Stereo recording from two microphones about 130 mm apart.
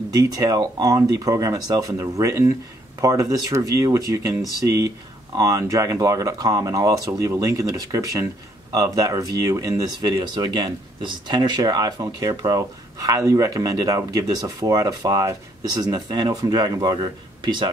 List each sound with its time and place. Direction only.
0.1 s speech: 30° right (ahead or behind)